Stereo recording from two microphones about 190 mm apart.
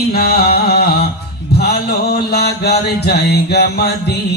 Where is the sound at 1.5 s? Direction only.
60° left (ahead or behind).